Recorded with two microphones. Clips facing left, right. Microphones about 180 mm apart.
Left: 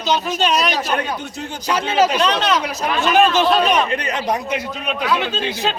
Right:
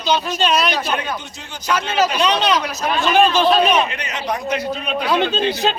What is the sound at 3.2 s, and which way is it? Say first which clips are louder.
Speech: right 1 dB; 15° right (ahead or behind).